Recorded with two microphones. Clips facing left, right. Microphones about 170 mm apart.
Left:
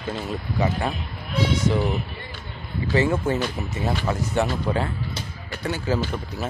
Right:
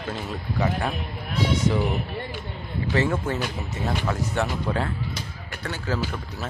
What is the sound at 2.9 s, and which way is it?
Speech, 5° left (ahead or behind).